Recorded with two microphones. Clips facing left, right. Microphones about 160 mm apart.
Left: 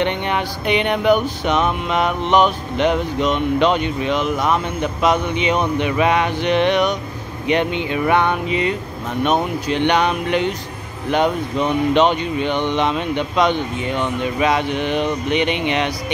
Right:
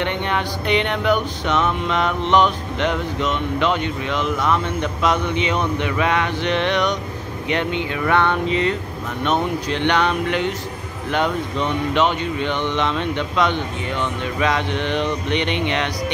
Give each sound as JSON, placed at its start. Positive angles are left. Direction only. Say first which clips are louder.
{"t": 0.0, "sound": "music", "louder": "left 2 dB", "side_deg": 15}